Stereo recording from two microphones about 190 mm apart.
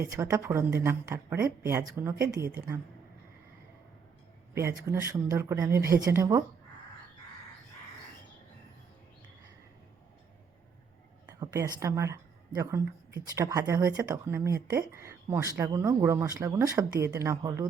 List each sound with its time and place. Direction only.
0.0 s a woman's voice: 15° right (ahead or behind)
4.9 s a woman's voice: 15° right (ahead or behind)
11.3 s a woman's voice: 20° right (ahead or behind)